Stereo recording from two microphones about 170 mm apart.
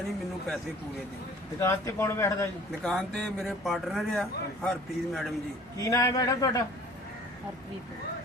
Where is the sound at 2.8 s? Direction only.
5° left (ahead or behind).